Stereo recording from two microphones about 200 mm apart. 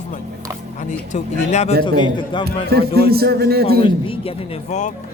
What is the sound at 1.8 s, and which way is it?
Speech, 25° left (ahead or behind).